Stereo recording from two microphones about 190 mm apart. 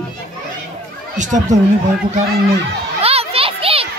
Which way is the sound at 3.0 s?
30° right (ahead or behind).